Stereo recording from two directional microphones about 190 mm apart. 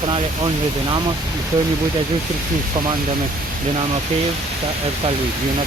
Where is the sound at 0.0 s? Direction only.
30° right (ahead or behind).